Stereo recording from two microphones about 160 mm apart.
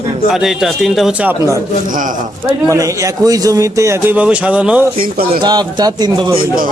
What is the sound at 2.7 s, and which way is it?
A man's voice, 20° right (ahead or behind).